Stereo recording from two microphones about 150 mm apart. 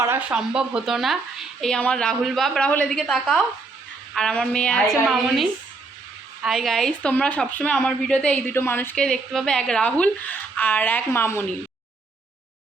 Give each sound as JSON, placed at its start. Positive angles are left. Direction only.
{"t": 0.0, "sound": "speech", "side_deg": -15}